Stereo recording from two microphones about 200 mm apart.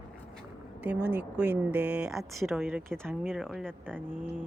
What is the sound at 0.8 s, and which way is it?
Speech, 55° right (ahead or behind).